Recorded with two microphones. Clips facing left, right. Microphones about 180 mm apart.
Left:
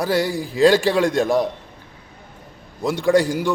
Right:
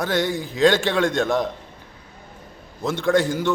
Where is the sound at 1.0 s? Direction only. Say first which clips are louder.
Left 2 dB; 35° left (ahead or behind).